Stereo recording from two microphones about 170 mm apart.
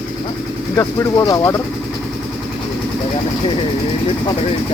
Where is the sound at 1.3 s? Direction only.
15° left (ahead or behind).